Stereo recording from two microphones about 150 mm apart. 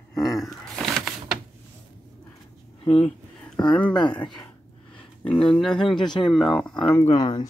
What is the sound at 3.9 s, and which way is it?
Speech, 30° left (ahead or behind).